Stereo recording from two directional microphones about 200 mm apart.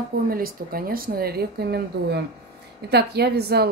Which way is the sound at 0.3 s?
45° right (ahead or behind).